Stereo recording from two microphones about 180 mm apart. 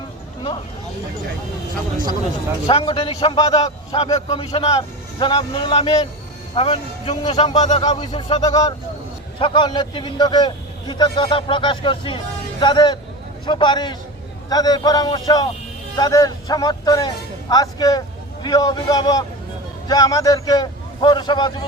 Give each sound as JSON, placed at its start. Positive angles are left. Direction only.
{"t": 2.6, "sound": "a man's voice", "side_deg": 30}
{"t": 3.9, "sound": "a man's voice", "side_deg": 35}
{"t": 7.8, "sound": "a man's voice", "side_deg": 25}